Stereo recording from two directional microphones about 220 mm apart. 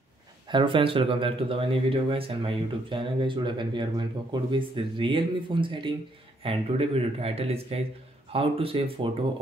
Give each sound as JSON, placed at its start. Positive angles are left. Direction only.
{"t": 0.5, "sound": "speech", "side_deg": -20}